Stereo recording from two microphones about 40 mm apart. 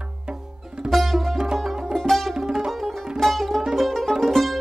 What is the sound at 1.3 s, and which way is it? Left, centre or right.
Music, centre.